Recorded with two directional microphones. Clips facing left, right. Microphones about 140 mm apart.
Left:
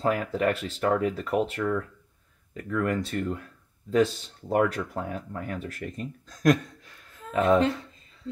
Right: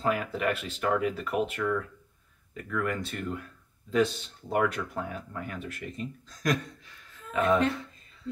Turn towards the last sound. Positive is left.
turn(degrees=35)  # may be behind; listen again after turning